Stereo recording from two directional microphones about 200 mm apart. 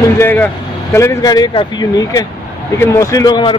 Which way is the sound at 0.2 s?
10° left (ahead or behind).